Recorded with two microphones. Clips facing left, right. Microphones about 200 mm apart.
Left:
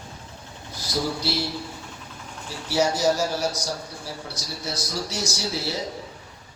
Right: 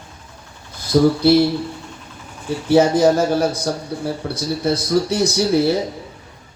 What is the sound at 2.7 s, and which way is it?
Speech, 55° right (ahead or behind).